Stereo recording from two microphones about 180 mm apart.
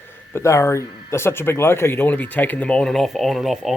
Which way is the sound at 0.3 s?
15° left (ahead or behind).